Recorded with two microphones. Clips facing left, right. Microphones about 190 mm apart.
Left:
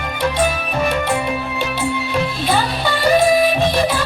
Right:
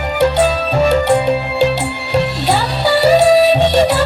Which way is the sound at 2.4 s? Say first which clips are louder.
Right 4 dB; 70° right (ahead or behind).